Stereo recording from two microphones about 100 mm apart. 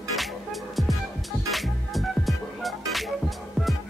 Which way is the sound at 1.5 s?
Centre (ahead or behind).